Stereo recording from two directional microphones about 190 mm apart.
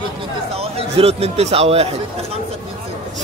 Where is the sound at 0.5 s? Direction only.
30° right (ahead or behind).